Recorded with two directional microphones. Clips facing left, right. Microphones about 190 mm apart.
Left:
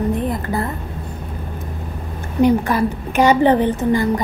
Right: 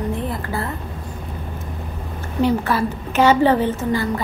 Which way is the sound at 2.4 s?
15° left (ahead or behind).